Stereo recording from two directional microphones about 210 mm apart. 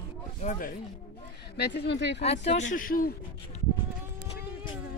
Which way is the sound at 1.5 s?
55° left (ahead or behind).